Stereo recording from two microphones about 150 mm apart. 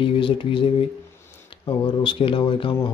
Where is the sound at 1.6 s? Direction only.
30° left (ahead or behind).